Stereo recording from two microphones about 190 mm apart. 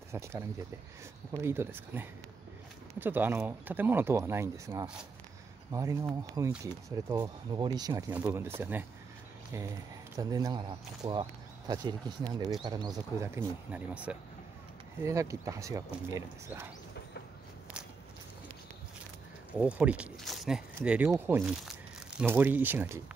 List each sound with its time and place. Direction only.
0.1 s speech: 15° right (ahead or behind)
10.1 s speech: 20° right (ahead or behind)
19.6 s speech: 5° right (ahead or behind)